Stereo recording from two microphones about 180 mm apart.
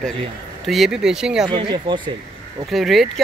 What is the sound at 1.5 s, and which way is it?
Speech, 25° right (ahead or behind).